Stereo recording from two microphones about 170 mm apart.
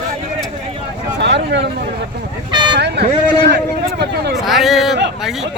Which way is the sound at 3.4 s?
75° right (ahead or behind).